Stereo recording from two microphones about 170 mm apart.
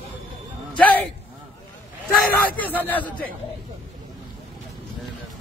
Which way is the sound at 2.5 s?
10° left (ahead or behind).